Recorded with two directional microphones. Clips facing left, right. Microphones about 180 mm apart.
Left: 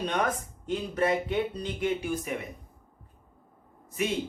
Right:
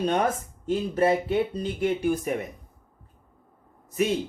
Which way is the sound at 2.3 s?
45° right (ahead or behind).